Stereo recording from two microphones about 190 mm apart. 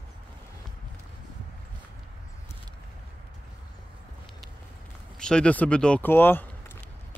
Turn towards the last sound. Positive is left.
turn(degrees=10)  # may be behind; listen again after turning